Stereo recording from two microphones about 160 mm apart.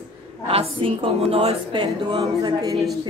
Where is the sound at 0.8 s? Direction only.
35° right (ahead or behind).